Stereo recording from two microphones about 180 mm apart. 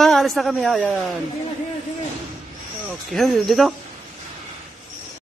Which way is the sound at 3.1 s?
Centre (ahead or behind).